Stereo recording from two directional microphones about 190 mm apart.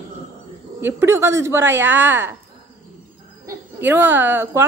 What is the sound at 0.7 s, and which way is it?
A woman's voice, 10° right (ahead or behind).